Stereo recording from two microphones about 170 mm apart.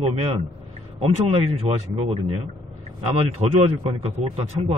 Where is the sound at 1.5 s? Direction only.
40° right (ahead or behind).